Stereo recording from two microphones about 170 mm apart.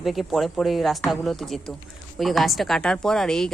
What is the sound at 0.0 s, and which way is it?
Speech, centre (ahead or behind).